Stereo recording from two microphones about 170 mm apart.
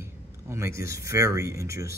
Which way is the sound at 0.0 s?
15° right (ahead or behind).